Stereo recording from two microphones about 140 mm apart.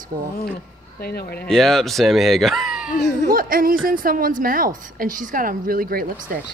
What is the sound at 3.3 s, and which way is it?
A woman's voice, 90° right.